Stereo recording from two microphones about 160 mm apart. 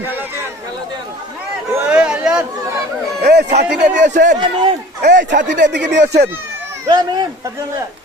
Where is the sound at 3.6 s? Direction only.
90° right.